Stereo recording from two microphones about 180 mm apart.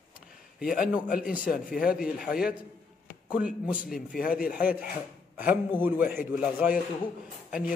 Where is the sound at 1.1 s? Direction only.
55° left (ahead or behind).